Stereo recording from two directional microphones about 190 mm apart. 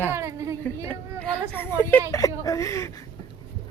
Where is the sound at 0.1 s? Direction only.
15° right (ahead or behind).